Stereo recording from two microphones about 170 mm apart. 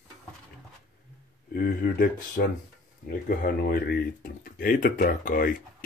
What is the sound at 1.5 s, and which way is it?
Speech, 60° left (ahead or behind).